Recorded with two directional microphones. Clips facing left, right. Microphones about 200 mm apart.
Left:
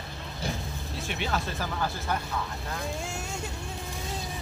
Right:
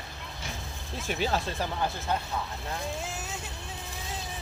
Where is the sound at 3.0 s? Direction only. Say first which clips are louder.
Left 2 dB; centre (ahead or behind).